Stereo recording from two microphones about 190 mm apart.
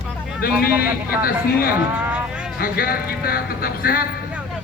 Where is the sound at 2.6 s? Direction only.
50° left (ahead or behind).